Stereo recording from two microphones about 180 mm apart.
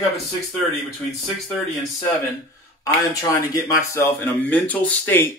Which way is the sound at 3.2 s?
20° left (ahead or behind).